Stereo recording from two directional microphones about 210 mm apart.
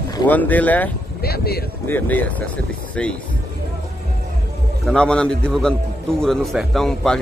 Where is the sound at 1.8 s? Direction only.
10° left (ahead or behind).